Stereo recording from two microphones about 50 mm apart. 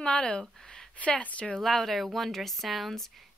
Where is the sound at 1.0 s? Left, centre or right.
Left.